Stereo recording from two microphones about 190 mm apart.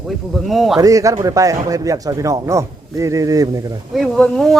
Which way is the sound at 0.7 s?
15° right (ahead or behind).